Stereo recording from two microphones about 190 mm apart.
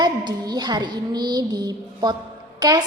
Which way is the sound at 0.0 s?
20° right (ahead or behind).